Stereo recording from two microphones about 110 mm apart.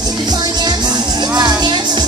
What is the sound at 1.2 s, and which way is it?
Music, 40° right (ahead or behind).